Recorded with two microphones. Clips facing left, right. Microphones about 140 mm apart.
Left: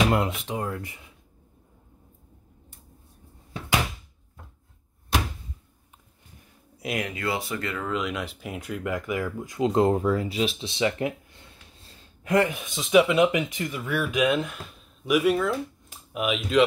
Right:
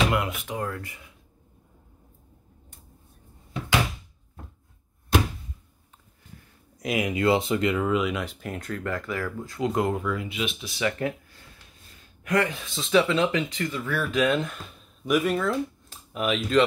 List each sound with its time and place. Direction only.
0.1 s speech: 25° left (ahead or behind)
6.8 s speech: 5° left (ahead or behind)
7.2 s speech: 25° right (ahead or behind); by 16.6 s 5° left (ahead or behind)